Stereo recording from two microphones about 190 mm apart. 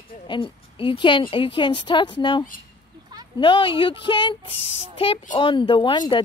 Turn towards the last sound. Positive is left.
turn(degrees=25)  # may be behind; listen again after turning